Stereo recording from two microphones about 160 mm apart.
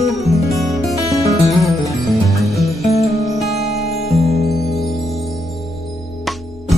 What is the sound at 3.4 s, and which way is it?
Music, centre (ahead or behind).